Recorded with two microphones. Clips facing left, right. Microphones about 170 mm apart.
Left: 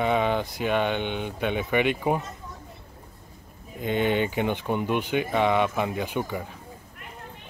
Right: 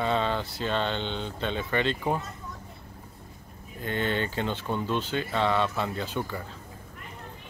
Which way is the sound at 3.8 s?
15° left (ahead or behind).